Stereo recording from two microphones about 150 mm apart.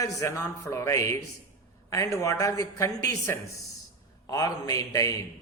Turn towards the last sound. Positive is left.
turn(degrees=25)  # may be behind; listen again after turning